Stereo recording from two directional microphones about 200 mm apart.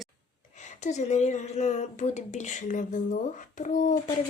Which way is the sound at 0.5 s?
35° left (ahead or behind).